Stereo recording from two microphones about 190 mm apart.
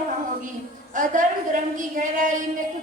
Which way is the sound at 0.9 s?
40° right (ahead or behind).